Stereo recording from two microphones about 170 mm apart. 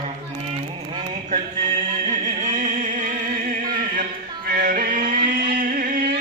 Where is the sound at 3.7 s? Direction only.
55° right (ahead or behind).